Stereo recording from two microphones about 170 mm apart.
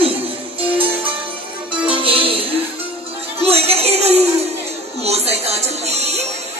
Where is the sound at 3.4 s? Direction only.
35° right (ahead or behind).